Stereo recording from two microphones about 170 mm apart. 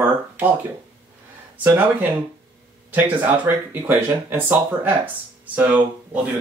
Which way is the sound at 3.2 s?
10° right (ahead or behind).